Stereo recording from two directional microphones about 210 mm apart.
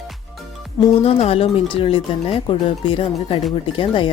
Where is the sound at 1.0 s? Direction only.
30° left (ahead or behind).